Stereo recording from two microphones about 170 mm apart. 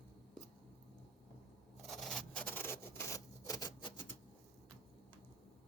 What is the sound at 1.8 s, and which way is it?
Rub, centre (ahead or behind).